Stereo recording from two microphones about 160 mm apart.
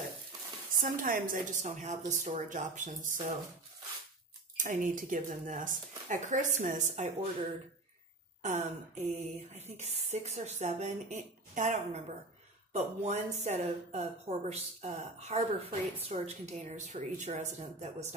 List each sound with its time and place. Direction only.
0.7 s speech: 60° right (ahead or behind)
4.6 s speech: 55° right (ahead or behind)
8.4 s speech: 45° right (ahead or behind)